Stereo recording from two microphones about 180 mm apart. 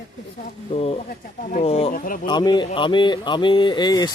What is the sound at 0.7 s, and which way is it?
Speech, 35° left (ahead or behind).